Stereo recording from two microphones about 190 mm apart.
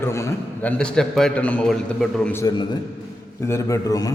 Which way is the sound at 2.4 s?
25° left (ahead or behind).